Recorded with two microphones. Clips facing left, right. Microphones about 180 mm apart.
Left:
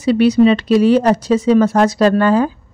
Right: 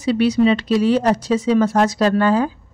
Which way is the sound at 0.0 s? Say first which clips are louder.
Left 4 dB; 60° left (ahead or behind).